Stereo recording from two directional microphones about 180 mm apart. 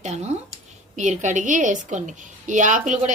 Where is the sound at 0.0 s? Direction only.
40° right (ahead or behind).